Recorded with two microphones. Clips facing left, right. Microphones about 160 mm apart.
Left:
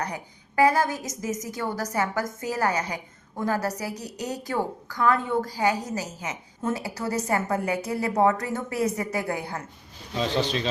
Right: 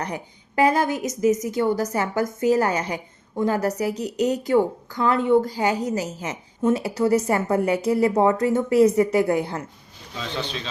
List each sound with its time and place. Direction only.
0.0 s a woman's voice: 25° right (ahead or behind)
10.2 s a man's voice: 35° left (ahead or behind)